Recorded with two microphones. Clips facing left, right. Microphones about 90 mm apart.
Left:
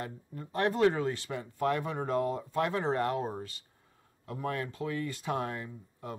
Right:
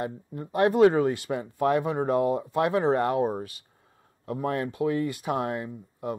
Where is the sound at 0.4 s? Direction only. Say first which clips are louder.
Right 7 dB; 20° right (ahead or behind).